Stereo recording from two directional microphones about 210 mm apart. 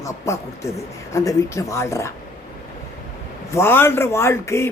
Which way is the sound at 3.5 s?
10° left (ahead or behind).